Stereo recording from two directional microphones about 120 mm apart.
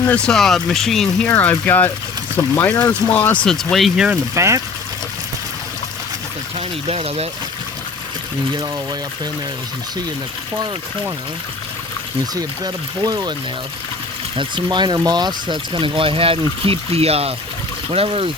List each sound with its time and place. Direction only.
0.0 s speech: 10° left (ahead or behind)
1.3 s speech: 15° left (ahead or behind); by 4.2 s 5° right (ahead or behind)
4.4 s speech: 25° right (ahead or behind)
6.8 s speech: 55° right (ahead or behind)
12.3 s speech: 30° right (ahead or behind)
14.3 s speech: 40° right (ahead or behind)